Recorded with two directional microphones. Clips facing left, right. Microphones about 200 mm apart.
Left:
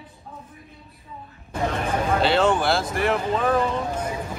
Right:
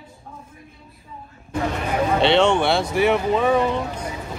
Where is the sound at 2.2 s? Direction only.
5° left (ahead or behind).